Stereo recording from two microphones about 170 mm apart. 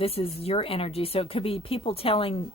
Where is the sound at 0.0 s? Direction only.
35° left (ahead or behind).